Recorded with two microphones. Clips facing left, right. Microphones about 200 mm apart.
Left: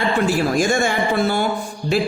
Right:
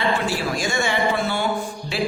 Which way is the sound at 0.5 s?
50° left (ahead or behind).